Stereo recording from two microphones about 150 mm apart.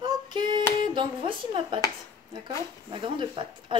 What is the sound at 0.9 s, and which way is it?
Speech, 30° right (ahead or behind).